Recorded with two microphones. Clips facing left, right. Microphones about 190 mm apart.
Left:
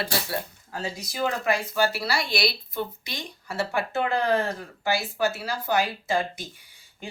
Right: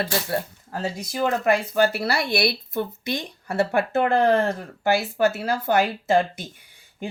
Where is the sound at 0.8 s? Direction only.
55° right (ahead or behind).